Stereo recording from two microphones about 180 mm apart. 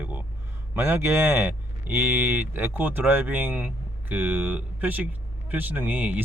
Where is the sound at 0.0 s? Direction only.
10° right (ahead or behind).